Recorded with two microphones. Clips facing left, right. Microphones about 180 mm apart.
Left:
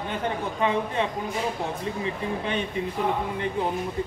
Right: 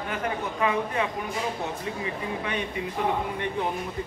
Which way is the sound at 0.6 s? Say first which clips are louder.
Left 1 dB; 30° left (ahead or behind).